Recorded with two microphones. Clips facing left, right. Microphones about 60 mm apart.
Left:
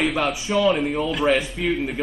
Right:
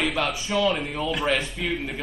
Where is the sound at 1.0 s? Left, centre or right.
Centre.